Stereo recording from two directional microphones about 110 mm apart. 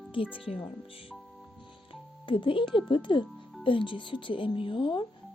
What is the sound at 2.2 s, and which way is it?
Speech, 50° left (ahead or behind).